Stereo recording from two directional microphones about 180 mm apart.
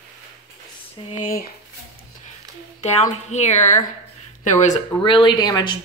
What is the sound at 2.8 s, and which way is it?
A woman's voice, 40° left (ahead or behind).